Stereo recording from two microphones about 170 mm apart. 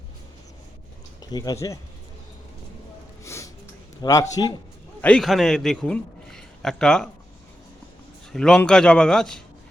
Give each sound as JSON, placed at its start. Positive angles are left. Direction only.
{"t": 1.2, "sound": "speech", "side_deg": 20}
{"t": 3.2, "sound": "music", "side_deg": 15}
{"t": 4.0, "sound": "a man's voice", "side_deg": 20}
{"t": 4.9, "sound": "a man's voice", "side_deg": 5}
{"t": 8.3, "sound": "a man's voice", "side_deg": 5}